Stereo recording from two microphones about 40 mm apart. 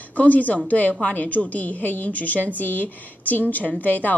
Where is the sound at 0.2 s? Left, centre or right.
Left.